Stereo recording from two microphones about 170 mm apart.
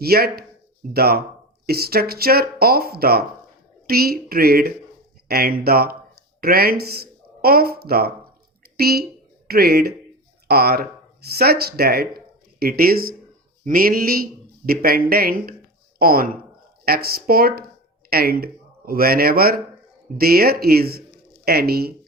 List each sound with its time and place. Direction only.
0.0 s a woman's voice: 65° right (ahead or behind)